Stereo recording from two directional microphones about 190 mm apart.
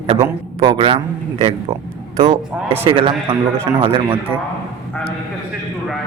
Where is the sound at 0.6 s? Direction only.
25° right (ahead or behind).